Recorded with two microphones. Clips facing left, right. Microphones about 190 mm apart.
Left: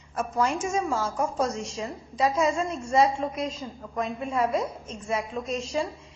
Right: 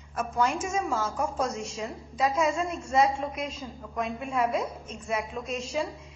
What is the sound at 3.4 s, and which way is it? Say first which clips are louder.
Speech: left 3 dB; 30° left (ahead or behind).